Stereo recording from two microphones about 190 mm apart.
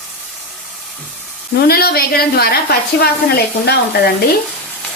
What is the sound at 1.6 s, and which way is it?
A woman's voice, 55° left (ahead or behind).